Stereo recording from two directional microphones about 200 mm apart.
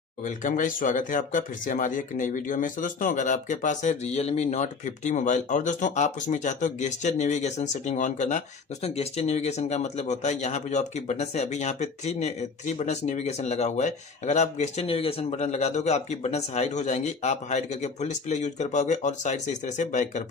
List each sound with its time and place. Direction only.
0.2 s speech: 40° left (ahead or behind)